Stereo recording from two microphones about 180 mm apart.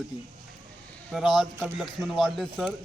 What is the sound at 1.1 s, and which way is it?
Speech, centre (ahead or behind).